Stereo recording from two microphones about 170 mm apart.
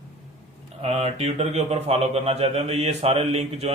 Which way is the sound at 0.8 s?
40° right (ahead or behind).